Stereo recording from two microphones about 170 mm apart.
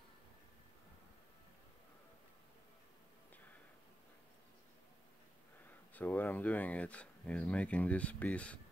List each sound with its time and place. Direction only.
5.9 s speech: 10° left (ahead or behind)